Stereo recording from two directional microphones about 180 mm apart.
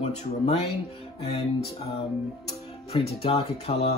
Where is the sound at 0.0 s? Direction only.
35° left (ahead or behind).